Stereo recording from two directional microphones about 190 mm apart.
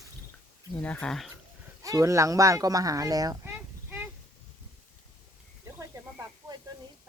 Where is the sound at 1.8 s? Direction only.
15° right (ahead or behind).